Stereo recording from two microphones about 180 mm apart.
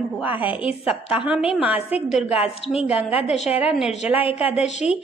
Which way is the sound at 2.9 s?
10° right (ahead or behind).